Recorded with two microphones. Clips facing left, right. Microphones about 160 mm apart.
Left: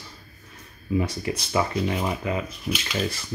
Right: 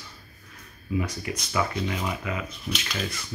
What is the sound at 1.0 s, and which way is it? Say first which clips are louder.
Speech: left 4 dB; 30° left (ahead or behind).